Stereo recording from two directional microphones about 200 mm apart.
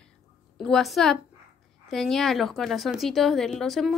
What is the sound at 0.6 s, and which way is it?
A woman's voice, centre (ahead or behind).